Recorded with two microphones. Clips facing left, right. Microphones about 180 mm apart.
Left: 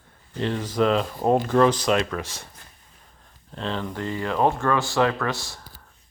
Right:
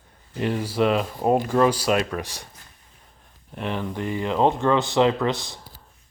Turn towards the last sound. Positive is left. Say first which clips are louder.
# right 3 dB
turn(degrees=-20)  # may be behind; listen again after turning